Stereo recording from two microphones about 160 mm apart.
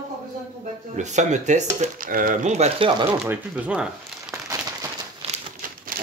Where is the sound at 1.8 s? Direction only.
60° right (ahead or behind); by 2.9 s 45° right (ahead or behind).